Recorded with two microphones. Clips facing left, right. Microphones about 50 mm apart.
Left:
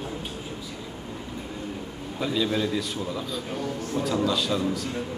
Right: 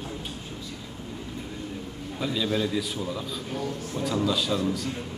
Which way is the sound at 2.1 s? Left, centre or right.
Centre.